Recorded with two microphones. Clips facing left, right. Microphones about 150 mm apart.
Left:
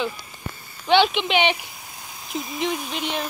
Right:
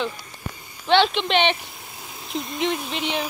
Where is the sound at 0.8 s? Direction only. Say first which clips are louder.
Even; 5° left (ahead or behind).